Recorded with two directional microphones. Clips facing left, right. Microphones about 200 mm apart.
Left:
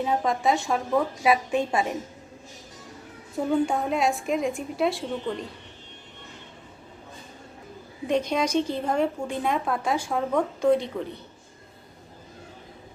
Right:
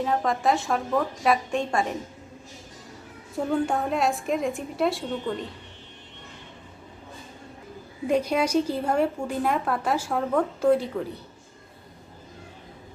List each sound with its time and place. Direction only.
0.0 s a woman's voice: 5° left (ahead or behind)
3.3 s a woman's voice: centre (ahead or behind)
8.0 s a woman's voice: 10° right (ahead or behind)